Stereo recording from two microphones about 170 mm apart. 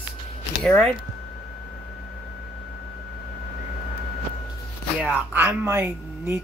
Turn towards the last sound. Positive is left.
turn(degrees=-15)  # may be behind; listen again after turning